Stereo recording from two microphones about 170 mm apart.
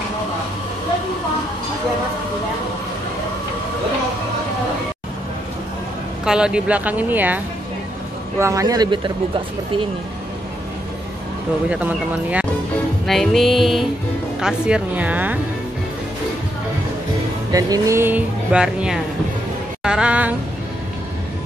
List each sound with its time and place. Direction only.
6.2 s speech: 5° right (ahead or behind); by 9.4 s 30° right (ahead or behind)
11.7 s speech: 10° right (ahead or behind)
13.0 s music: centre (ahead or behind)
14.4 s speech: 5° right (ahead or behind)
17.5 s speech: 20° right (ahead or behind); by 18.9 s 5° right (ahead or behind)
19.8 s music: 5° right (ahead or behind)